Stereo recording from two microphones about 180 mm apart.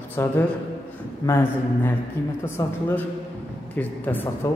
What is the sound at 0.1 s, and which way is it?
A man's voice, 10° left (ahead or behind).